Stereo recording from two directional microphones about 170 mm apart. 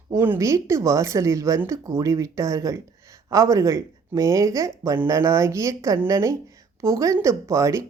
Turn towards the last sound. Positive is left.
turn(degrees=-15)  # may be behind; listen again after turning